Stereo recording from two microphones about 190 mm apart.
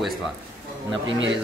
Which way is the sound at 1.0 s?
75° right (ahead or behind).